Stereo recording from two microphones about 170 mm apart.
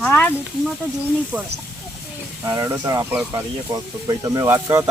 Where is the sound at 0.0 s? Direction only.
10° left (ahead or behind).